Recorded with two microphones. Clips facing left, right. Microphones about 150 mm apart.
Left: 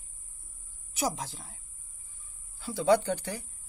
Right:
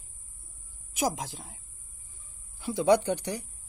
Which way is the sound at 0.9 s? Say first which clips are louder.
Right 2 dB; 15° right (ahead or behind).